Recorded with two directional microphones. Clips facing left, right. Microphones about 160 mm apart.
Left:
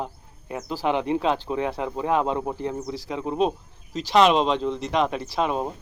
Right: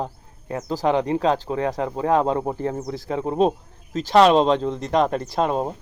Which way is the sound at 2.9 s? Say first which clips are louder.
Right 4 dB; 50° right (ahead or behind).